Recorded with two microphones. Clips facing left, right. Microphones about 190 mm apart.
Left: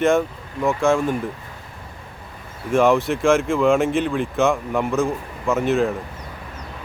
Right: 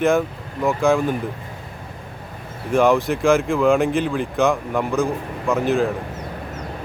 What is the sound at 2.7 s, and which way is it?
A man's voice, centre (ahead or behind).